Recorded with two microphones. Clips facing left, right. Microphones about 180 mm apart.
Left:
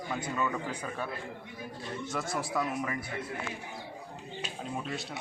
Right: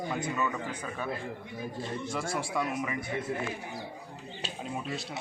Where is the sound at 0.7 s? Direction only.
5° left (ahead or behind).